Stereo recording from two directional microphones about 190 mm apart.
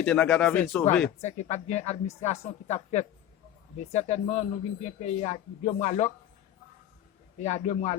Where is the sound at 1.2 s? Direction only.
35° left (ahead or behind).